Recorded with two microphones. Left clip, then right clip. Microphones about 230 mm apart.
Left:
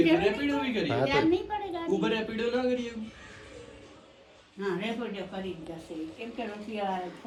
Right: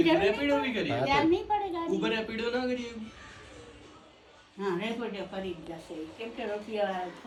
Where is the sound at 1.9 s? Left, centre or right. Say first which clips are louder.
Left 1 dB; centre.